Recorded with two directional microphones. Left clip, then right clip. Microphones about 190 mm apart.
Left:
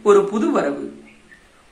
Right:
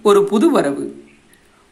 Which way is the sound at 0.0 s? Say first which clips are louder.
Right 2 dB; 50° right (ahead or behind).